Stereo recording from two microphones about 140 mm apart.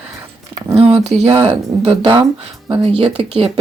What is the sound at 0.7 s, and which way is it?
Speech, 45° right (ahead or behind).